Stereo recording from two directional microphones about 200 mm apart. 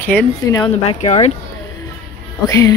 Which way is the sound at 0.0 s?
5° left (ahead or behind).